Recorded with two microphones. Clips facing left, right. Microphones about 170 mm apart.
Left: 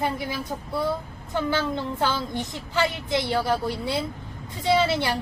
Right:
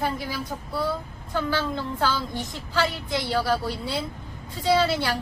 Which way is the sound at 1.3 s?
20° left (ahead or behind).